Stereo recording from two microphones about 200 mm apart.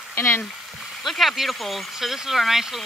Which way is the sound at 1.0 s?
Centre (ahead or behind).